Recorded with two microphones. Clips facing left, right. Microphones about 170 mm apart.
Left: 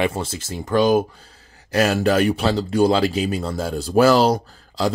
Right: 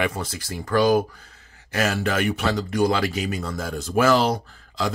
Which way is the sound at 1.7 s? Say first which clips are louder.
Left 6 dB; 35° left (ahead or behind).